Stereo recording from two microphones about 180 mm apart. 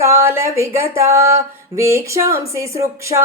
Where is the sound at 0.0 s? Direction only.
15° right (ahead or behind).